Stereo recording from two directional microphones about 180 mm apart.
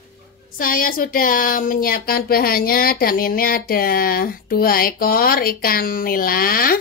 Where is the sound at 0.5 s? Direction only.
50° left (ahead or behind).